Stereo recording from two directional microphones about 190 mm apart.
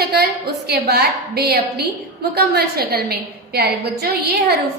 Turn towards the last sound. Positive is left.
turn(degrees=-55)  # may be behind; listen again after turning